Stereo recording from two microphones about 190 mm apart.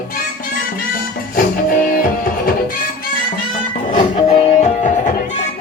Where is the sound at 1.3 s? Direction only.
45° left (ahead or behind).